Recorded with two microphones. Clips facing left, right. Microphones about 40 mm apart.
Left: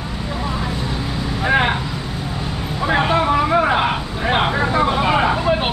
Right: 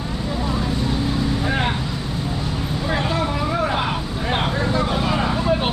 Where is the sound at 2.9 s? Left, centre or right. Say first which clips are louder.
Left 7 dB; left.